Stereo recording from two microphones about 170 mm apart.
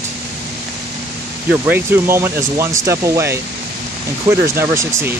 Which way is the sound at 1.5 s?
15° right (ahead or behind).